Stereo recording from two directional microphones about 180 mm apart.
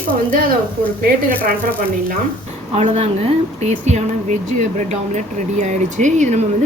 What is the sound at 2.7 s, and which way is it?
Speech, 35° right (ahead or behind).